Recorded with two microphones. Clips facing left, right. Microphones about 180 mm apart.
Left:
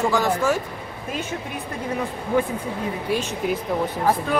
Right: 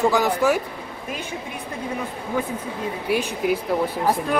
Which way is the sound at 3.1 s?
10° right (ahead or behind).